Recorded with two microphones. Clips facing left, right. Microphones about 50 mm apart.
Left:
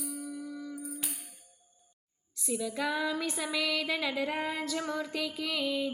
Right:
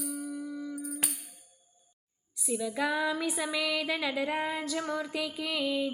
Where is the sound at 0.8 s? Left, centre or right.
Right.